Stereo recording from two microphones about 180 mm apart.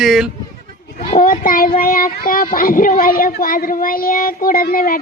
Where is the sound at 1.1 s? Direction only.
50° left (ahead or behind).